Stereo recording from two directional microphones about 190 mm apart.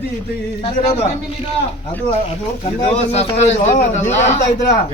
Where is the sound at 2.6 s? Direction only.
30° left (ahead or behind).